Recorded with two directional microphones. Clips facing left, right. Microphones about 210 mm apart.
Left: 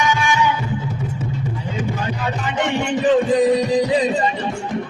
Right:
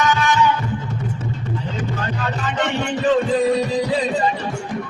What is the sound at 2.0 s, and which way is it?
Music, 15° left (ahead or behind).